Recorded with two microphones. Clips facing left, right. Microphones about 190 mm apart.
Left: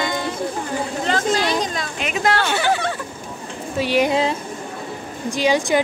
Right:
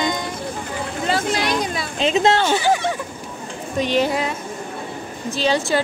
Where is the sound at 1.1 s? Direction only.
10° right (ahead or behind).